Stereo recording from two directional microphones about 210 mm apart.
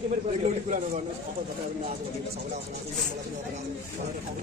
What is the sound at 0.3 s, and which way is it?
Speech, 35° right (ahead or behind).